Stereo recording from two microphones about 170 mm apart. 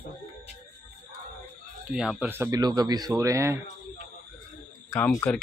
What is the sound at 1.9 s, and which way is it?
Speech, 5° right (ahead or behind).